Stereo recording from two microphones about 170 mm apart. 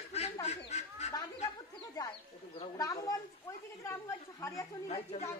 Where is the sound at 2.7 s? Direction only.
20° left (ahead or behind).